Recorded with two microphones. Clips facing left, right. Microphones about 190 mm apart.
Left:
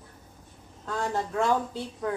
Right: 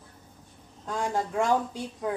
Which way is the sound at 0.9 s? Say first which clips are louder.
Right 1 dB; 15° right (ahead or behind).